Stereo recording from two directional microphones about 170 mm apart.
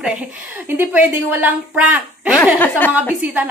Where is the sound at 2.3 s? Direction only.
10° left (ahead or behind).